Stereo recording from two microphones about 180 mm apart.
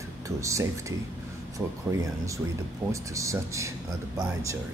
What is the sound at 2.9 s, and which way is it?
Speech, 15° right (ahead or behind).